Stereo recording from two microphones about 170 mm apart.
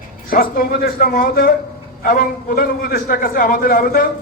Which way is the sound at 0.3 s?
60° left (ahead or behind).